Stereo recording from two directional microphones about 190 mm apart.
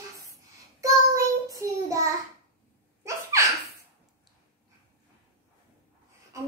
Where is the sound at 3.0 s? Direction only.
15° right (ahead or behind).